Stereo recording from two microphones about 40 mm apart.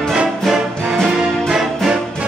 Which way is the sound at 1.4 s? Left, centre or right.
Centre.